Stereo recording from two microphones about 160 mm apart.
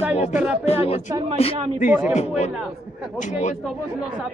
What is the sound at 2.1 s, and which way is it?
Speech, 45° left (ahead or behind).